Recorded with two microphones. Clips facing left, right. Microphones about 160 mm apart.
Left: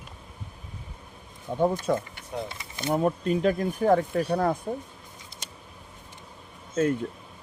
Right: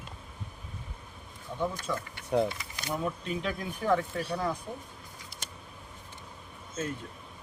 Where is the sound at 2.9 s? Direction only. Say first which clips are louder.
Left 8 dB; 50° left (ahead or behind).